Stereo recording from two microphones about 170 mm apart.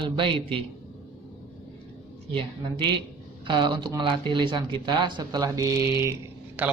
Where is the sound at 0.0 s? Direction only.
30° right (ahead or behind).